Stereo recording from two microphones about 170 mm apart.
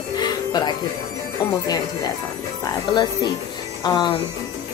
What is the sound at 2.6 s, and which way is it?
A woman's voice, 25° left (ahead or behind).